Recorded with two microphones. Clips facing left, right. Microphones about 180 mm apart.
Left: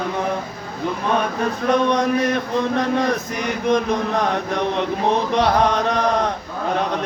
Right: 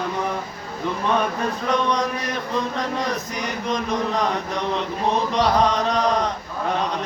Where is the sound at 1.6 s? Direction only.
55° left (ahead or behind).